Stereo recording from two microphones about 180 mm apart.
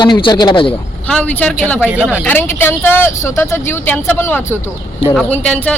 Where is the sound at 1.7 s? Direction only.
10° right (ahead or behind).